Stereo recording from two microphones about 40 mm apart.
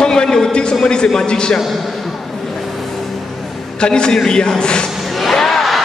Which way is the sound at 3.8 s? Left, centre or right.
Left.